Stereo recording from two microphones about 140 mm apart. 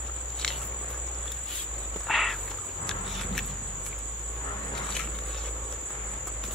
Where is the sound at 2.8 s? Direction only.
5° left (ahead or behind).